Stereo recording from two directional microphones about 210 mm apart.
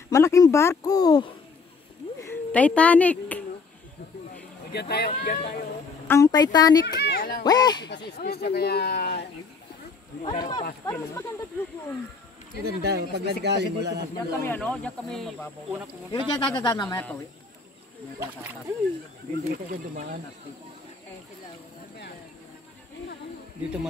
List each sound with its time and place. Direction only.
0.1 s speech: 15° left (ahead or behind)
2.2 s a sound: 5° left (ahead or behind)
4.7 s speech: 50° left (ahead or behind)
6.0 s speech: 15° left (ahead or behind)
7.0 s speech: 50° left (ahead or behind)
7.4 s speech: 20° left (ahead or behind)
7.8 s speech: 55° left (ahead or behind)
10.2 s speech: 20° left (ahead or behind)
12.6 s speech: 50° right (ahead or behind)
14.1 s speech: 10° left (ahead or behind)
16.1 s speech: 20° left (ahead or behind)
18.2 s speech: 10° right (ahead or behind)
19.5 s speech: 45° right (ahead or behind)